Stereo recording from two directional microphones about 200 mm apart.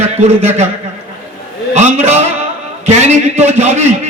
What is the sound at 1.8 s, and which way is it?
A man's voice, 35° right (ahead or behind).